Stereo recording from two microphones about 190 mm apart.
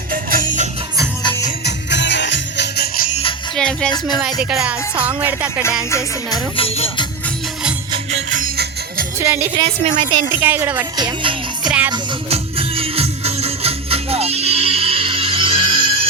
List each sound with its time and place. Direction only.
0.1 s music: 50° right (ahead or behind)
1.6 s music: 65° left (ahead or behind)
3.5 s music: 5° left (ahead or behind)
4.2 s speech: 5° right (ahead or behind)
5.9 s music: 15° left (ahead or behind)
6.6 s music: 30° left (ahead or behind)
8.4 s music: 50° right (ahead or behind)
9.1 s speech: 10° right (ahead or behind)
9.6 s a woman's voice: 30° right (ahead or behind)
10.2 s speech: 10° right (ahead or behind)
10.9 s music: 25° right (ahead or behind)